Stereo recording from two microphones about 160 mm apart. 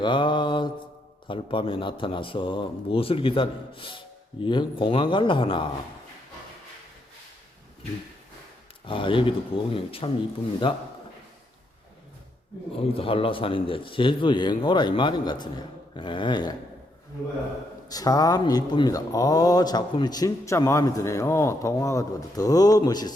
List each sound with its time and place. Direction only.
0.0 s speech: 30° left (ahead or behind)
8.8 s speech: 35° left (ahead or behind)
12.9 s speech: 35° left (ahead or behind)
17.8 s speech: 25° left (ahead or behind)